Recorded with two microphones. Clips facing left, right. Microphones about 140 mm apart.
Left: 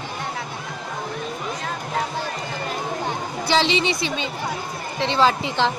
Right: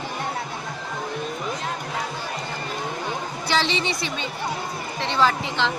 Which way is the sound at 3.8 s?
90° left.